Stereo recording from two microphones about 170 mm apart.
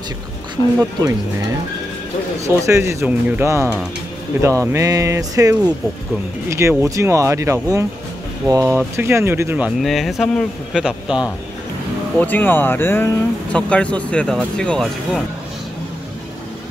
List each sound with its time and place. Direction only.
0.6 s speech: 25° left (ahead or behind)
2.4 s speech: 15° right (ahead or behind)
9.8 s speech: centre (ahead or behind)
12.2 s speech: 10° left (ahead or behind)